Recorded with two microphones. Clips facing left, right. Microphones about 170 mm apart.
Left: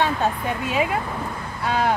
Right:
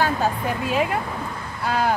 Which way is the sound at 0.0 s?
Centre (ahead or behind).